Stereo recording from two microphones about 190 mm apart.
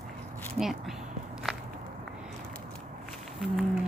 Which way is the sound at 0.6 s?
Centre (ahead or behind).